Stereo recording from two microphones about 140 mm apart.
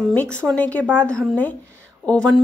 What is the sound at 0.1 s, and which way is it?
Speech, 10° left (ahead or behind).